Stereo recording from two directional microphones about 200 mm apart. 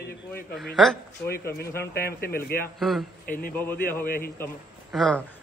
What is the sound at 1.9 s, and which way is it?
Speech, 50° left (ahead or behind).